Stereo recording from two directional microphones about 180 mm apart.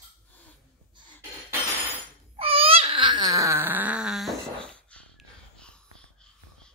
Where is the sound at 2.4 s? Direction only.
30° right (ahead or behind).